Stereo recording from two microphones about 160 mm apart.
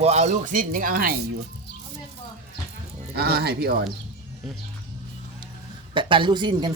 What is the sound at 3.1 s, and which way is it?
Speech, 85° right.